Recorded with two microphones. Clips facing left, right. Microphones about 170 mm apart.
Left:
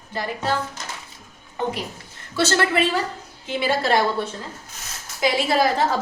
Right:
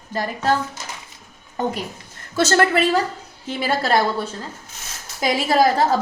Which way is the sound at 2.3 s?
45° right (ahead or behind).